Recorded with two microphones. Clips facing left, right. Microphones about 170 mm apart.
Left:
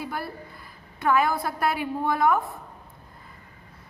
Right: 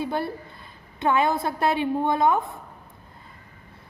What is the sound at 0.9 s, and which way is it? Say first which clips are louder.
A woman's voice: right 1 dB; 25° right (ahead or behind).